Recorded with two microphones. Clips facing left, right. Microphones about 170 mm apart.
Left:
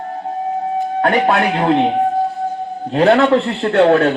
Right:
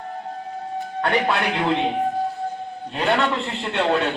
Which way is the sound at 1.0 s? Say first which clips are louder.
Left 6 dB; 55° left (ahead or behind).